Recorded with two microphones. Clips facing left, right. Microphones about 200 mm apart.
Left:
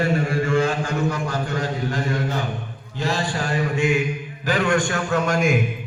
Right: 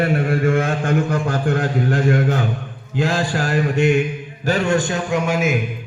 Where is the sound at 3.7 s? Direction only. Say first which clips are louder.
Right 4 dB; 65° right (ahead or behind).